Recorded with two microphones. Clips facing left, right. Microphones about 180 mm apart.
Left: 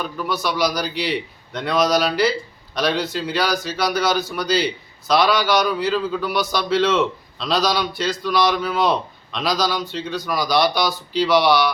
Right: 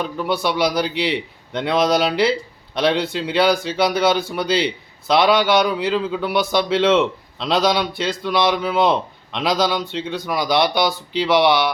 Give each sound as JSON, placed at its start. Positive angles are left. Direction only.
{"t": 0.0, "sound": "speech", "side_deg": -25}